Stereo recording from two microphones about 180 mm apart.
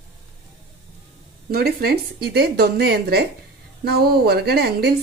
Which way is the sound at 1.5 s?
60° right (ahead or behind).